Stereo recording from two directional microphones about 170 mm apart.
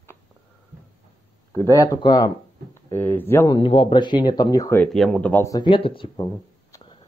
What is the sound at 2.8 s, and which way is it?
Speech, 10° left (ahead or behind).